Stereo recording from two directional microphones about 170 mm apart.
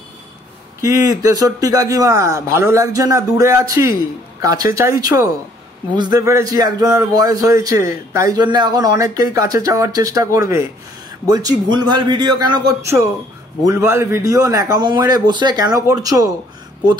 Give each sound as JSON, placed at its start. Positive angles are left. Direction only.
{"t": 0.7, "sound": "speech", "side_deg": -20}